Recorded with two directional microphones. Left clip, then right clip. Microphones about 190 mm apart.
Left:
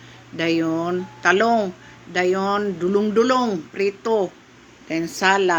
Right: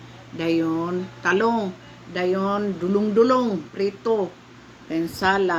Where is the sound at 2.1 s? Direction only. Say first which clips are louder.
Left 3 dB; 35° left (ahead or behind).